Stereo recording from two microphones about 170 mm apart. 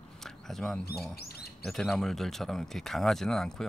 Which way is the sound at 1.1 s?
65° left (ahead or behind).